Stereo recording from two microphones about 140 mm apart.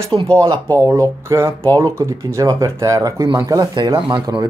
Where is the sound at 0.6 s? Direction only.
15° left (ahead or behind).